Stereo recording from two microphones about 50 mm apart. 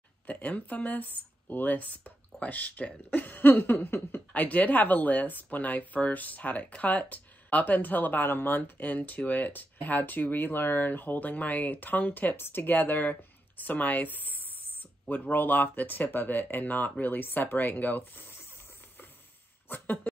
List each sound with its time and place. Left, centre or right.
0.3 s speech: left
4.3 s speech: left
19.7 s speech: left